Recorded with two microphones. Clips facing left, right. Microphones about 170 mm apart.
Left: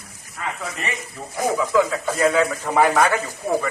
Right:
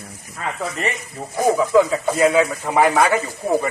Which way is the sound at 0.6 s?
30° right (ahead or behind).